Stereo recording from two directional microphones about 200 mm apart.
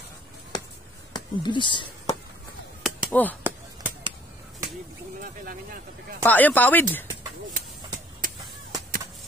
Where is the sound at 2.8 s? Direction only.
5° left (ahead or behind).